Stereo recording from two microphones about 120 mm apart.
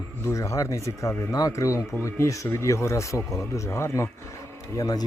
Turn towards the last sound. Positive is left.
turn(degrees=30)  # may be behind; listen again after turning